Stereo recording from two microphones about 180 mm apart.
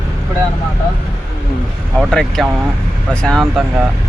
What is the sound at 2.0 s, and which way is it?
Speech, centre (ahead or behind).